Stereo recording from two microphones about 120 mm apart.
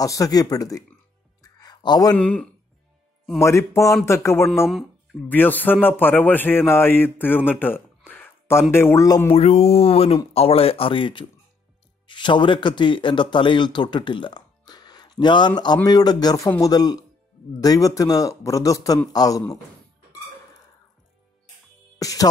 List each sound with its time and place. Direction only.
0.0 s a man's voice: 30° left (ahead or behind)
1.4 s music: 35° left (ahead or behind)
2.1 s speech: 10° left (ahead or behind)
3.3 s a man's voice: 25° left (ahead or behind)
9.3 s a man's voice: 60° left (ahead or behind); by 19.4 s 30° left (ahead or behind)
21.9 s speech: 30° left (ahead or behind)